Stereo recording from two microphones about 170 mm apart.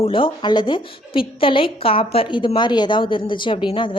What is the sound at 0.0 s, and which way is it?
A woman's voice, 30° left (ahead or behind).